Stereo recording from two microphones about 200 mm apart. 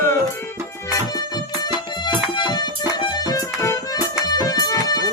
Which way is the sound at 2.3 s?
25° left (ahead or behind).